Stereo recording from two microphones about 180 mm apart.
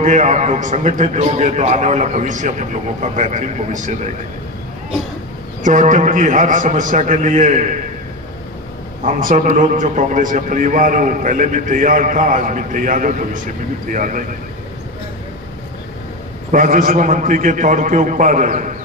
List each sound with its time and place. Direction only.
0.0 s a man's voice: 40° right (ahead or behind)
5.6 s a man's voice: 45° right (ahead or behind)
9.0 s a man's voice: 50° right (ahead or behind)
16.5 s a man's voice: 50° right (ahead or behind)